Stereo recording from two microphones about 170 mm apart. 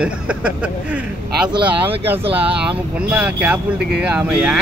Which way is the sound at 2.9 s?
5° right (ahead or behind).